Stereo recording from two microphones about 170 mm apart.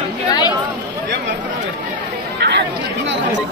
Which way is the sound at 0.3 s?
25° left (ahead or behind).